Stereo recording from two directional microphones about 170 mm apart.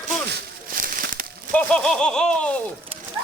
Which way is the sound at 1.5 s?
5° left (ahead or behind).